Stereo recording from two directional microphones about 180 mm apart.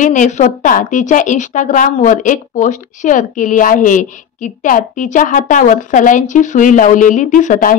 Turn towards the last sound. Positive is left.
turn(degrees=45)  # may be behind; listen again after turning